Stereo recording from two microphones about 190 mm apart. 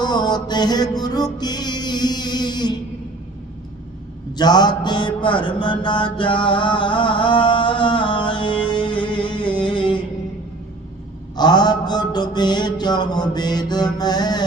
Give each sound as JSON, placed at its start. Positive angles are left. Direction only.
{"t": 0.0, "sound": "music", "side_deg": 20}
{"t": 4.4, "sound": "mantra", "side_deg": 20}
{"t": 11.3, "sound": "mantra", "side_deg": 20}
{"t": 14.0, "sound": "music", "side_deg": 20}